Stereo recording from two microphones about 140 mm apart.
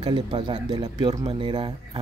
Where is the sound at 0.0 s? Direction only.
35° right (ahead or behind).